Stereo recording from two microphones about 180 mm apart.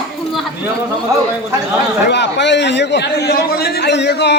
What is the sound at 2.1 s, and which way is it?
A man's voice, 75° left (ahead or behind).